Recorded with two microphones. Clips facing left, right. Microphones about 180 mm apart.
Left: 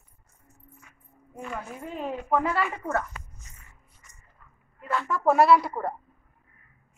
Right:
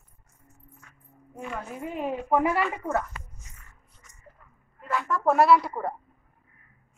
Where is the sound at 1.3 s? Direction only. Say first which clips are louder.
Right 1 dB; 5° right (ahead or behind).